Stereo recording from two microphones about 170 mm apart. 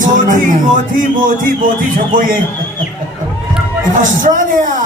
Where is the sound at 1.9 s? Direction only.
55° right (ahead or behind).